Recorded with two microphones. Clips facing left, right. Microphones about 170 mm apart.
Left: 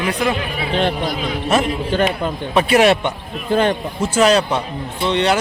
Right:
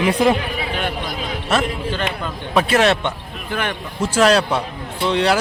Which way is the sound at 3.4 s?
25° left (ahead or behind).